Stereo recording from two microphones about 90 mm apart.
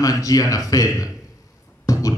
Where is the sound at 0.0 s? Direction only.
40° left (ahead or behind).